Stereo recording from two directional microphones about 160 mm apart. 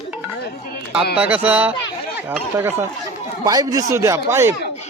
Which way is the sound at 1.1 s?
10° right (ahead or behind).